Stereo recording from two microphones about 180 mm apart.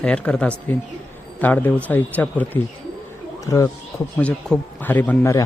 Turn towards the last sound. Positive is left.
turn(degrees=10)  # may be behind; listen again after turning